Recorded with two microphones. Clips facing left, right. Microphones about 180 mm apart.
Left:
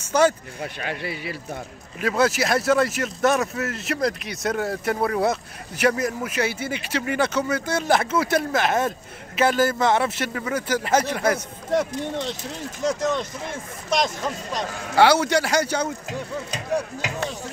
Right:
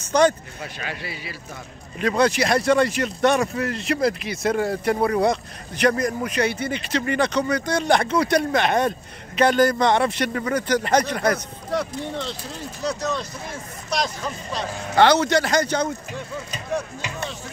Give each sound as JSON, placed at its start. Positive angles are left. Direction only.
{"t": 0.1, "sound": "a man's voice", "side_deg": 5}
{"t": 0.8, "sound": "speech", "side_deg": 55}
{"t": 2.0, "sound": "speech", "side_deg": 5}
{"t": 13.8, "sound": "speech", "side_deg": 25}
{"t": 15.0, "sound": "a man's voice", "side_deg": 10}